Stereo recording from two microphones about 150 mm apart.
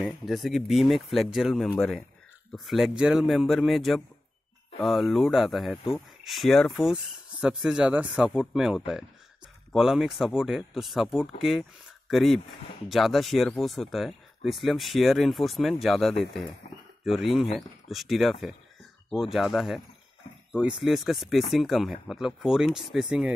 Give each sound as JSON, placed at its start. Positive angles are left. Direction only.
{"t": 0.0, "sound": "speech", "side_deg": 0}
{"t": 16.6, "sound": "speech", "side_deg": 50}
{"t": 17.0, "sound": "speech", "side_deg": 0}